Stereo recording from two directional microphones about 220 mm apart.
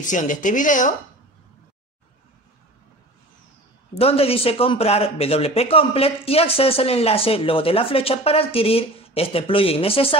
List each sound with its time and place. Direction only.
0.0 s a woman's voice: 35° left (ahead or behind)
3.9 s a man's voice: 25° left (ahead or behind)